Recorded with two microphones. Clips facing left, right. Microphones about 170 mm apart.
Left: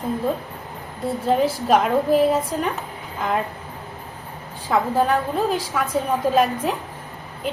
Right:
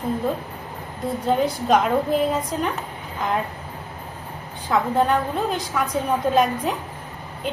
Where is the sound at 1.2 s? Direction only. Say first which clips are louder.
Left 2 dB; 5° left (ahead or behind).